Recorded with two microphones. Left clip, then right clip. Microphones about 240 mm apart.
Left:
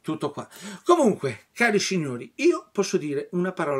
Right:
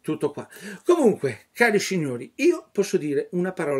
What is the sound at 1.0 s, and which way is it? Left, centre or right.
Speech, centre.